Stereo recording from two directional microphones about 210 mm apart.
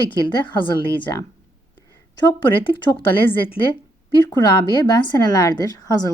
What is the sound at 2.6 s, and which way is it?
Speech, 20° left (ahead or behind).